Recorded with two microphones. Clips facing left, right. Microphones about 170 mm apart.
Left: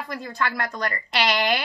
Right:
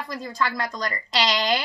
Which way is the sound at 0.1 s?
60° left (ahead or behind).